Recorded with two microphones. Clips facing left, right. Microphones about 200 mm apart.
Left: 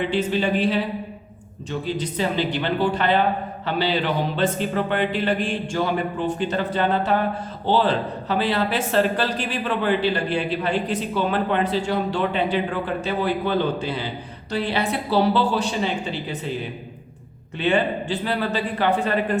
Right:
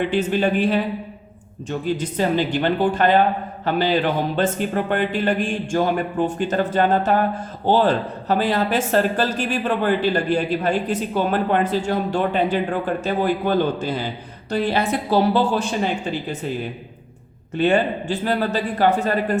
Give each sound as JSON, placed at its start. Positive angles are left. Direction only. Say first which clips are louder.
{"t": 0.1, "sound": "speech", "louder": "right 2 dB", "side_deg": -50}
{"t": 2.0, "sound": "speech", "louder": "right 2 dB", "side_deg": -45}
{"t": 17.6, "sound": "speech", "louder": "right 3 dB", "side_deg": -45}